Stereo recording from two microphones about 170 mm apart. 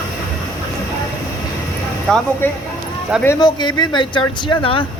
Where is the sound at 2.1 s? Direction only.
5° left (ahead or behind); by 4.8 s 30° left (ahead or behind).